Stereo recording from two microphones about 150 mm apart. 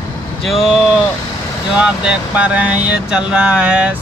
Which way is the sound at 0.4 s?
Centre (ahead or behind).